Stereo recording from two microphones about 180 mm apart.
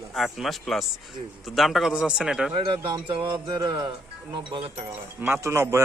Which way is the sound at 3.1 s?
15° right (ahead or behind).